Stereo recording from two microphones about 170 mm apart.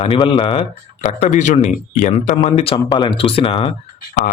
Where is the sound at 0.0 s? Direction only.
30° left (ahead or behind).